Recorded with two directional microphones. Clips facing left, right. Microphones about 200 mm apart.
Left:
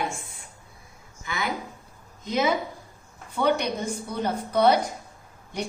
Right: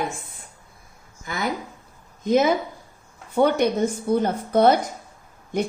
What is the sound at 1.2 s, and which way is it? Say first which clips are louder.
Speech: right 3 dB; 45° right (ahead or behind).